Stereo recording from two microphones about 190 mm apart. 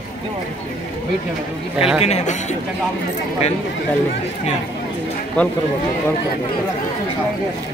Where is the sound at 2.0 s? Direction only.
35° left (ahead or behind).